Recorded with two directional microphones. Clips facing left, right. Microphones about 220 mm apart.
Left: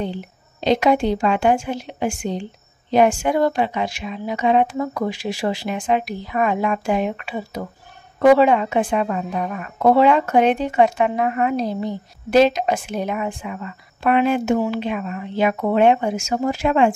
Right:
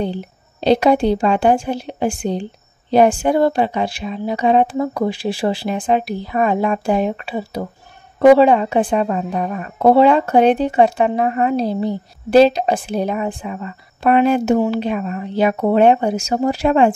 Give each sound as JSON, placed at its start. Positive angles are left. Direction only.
{"t": 0.0, "sound": "a woman's voice", "side_deg": -35}